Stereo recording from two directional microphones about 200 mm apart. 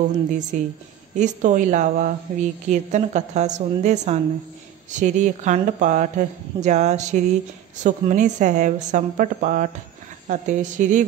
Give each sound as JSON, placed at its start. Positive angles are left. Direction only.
{"t": 0.3, "sound": "a woman's voice", "side_deg": -40}